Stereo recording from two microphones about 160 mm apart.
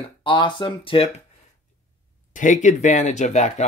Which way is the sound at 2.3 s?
50° left (ahead or behind).